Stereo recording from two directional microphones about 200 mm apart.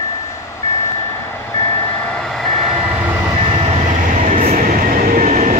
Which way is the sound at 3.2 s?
25° right (ahead or behind).